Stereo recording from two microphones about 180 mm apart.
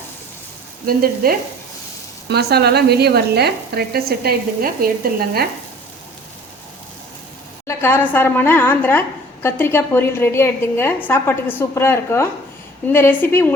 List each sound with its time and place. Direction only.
0.9 s speech: 55° right (ahead or behind)
2.3 s speech: 65° right (ahead or behind)
7.7 s a woman's voice: 10° left (ahead or behind)